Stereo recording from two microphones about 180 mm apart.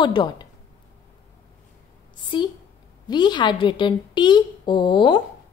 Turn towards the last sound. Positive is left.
turn(degrees=25)  # may be behind; listen again after turning